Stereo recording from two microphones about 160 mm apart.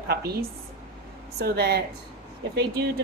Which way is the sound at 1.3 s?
85° right.